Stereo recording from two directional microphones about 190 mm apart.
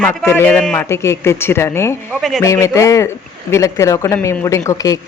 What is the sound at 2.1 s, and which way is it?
Speech, 5° right (ahead or behind).